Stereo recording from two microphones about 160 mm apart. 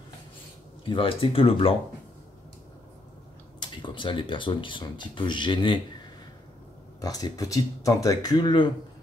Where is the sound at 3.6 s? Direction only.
30° left (ahead or behind).